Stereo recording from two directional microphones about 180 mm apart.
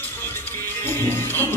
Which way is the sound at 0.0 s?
10° left (ahead or behind).